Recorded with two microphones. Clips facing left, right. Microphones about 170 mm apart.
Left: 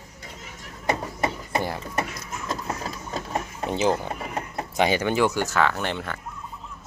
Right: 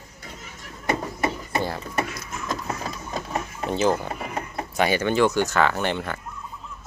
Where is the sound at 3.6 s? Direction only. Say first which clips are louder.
Right 1 dB; 15° left (ahead or behind); by 6.2 s centre (ahead or behind).